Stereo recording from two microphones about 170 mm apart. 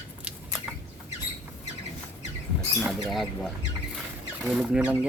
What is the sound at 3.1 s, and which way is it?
Speech, centre (ahead or behind).